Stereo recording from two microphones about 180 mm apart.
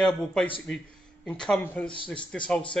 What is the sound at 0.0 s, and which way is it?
Speech, 5° left (ahead or behind).